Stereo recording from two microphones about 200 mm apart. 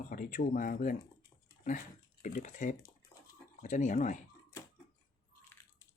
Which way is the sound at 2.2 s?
40° left (ahead or behind).